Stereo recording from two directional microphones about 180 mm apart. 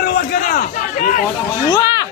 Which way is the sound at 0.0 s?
55° left (ahead or behind).